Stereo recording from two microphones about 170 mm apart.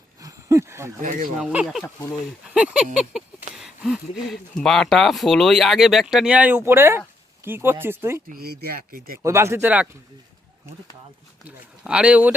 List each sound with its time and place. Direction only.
0.2 s a sound: 20° right (ahead or behind)
1.4 s speech: 5° right (ahead or behind)
1.8 s speech: 15° left (ahead or behind)
2.5 s speech: 5° right (ahead or behind)
8.3 s speech: 65° right (ahead or behind)
9.2 s speech: 15° right (ahead or behind)
11.4 s speech: 5° right (ahead or behind)